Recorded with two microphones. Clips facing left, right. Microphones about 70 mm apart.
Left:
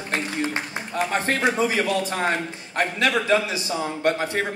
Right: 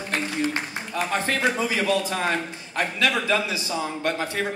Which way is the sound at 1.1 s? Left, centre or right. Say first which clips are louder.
Even; left.